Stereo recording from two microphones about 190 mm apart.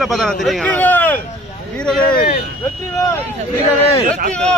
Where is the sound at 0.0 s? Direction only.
Centre (ahead or behind).